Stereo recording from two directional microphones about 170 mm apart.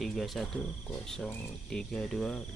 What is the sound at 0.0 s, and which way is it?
Speech, centre (ahead or behind).